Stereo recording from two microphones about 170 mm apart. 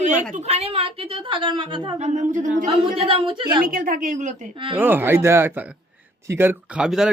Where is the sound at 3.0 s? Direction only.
35° right (ahead or behind).